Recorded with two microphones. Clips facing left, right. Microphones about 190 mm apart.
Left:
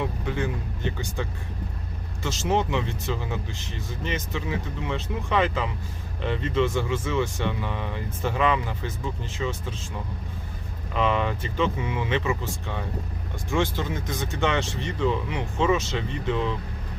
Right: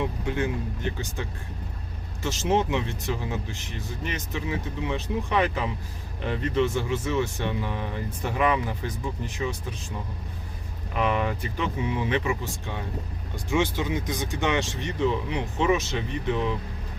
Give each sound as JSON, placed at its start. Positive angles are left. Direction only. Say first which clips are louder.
{"t": 0.3, "sound": "speech", "louder": "right 1 dB", "side_deg": -15}
{"t": 2.4, "sound": "speech", "louder": "right 1 dB", "side_deg": -15}
{"t": 10.9, "sound": "speech", "louder": "left 1 dB", "side_deg": -10}